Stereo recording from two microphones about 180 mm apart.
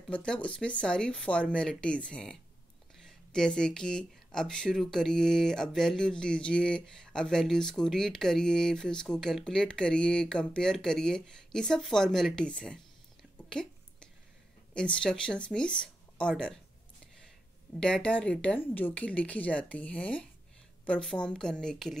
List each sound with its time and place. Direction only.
0.1 s speech: 5° left (ahead or behind)
14.7 s speech: 5° left (ahead or behind)
17.7 s speech: 5° left (ahead or behind)